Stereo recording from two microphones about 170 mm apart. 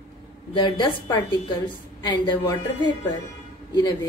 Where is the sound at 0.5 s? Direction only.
25° left (ahead or behind).